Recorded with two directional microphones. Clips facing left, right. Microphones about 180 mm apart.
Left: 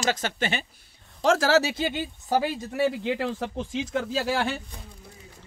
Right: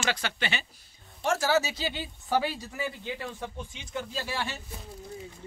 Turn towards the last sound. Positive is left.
turn(degrees=90)